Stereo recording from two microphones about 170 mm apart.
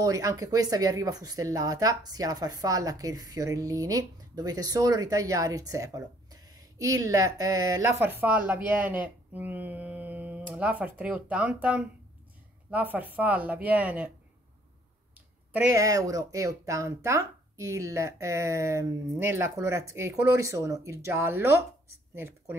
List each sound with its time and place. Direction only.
0.0 s speech: 20° right (ahead or behind)
15.7 s speech: 20° right (ahead or behind)